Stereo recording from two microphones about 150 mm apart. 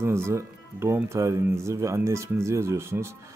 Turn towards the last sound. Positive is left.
turn(degrees=-15)  # may be behind; listen again after turning